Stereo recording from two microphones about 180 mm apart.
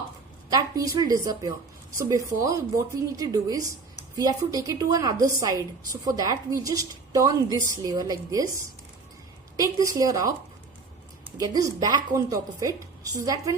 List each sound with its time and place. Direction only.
0.5 s a woman's voice: 20° right (ahead or behind)
9.7 s a woman's voice: 20° right (ahead or behind)
11.3 s a woman's voice: 20° right (ahead or behind)